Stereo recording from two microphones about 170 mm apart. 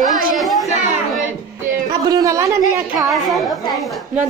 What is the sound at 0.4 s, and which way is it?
Chatter, centre (ahead or behind).